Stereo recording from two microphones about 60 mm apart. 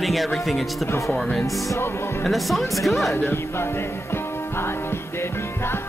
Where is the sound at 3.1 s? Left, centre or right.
Left.